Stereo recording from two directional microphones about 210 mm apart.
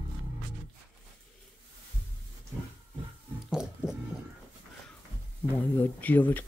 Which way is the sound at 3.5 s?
5° right (ahead or behind).